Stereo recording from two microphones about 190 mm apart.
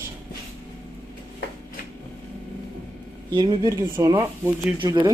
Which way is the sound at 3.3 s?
25° right (ahead or behind).